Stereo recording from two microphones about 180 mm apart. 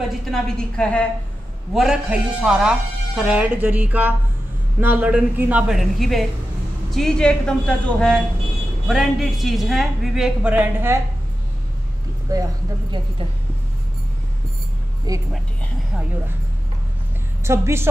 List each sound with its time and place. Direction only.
0.2 s a man's voice: 5° left (ahead or behind)
12.3 s speech: 20° right (ahead or behind)
15.1 s speech: 20° right (ahead or behind)
17.4 s a woman's voice: 15° right (ahead or behind)